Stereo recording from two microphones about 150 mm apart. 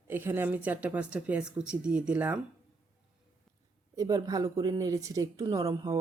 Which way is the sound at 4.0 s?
25° right (ahead or behind).